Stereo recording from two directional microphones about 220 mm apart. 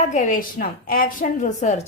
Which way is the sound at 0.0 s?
35° left (ahead or behind).